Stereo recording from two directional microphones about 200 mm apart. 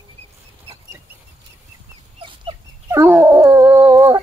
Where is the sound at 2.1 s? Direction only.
25° right (ahead or behind).